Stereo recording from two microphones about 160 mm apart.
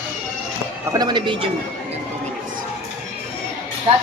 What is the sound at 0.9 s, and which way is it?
Speech, 25° right (ahead or behind).